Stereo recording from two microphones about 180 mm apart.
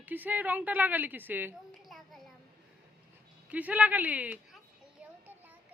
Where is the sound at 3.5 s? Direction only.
10° right (ahead or behind).